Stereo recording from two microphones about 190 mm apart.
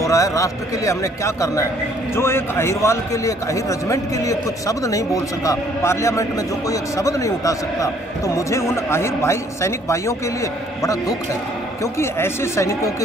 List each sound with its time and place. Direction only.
0.0 s a man's voice: 15° left (ahead or behind)